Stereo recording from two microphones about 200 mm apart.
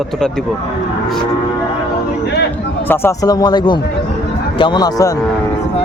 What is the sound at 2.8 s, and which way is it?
A man's voice, 10° left (ahead or behind).